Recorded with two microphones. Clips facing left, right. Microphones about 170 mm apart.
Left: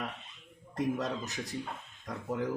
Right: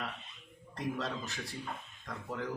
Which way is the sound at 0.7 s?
20° left (ahead or behind).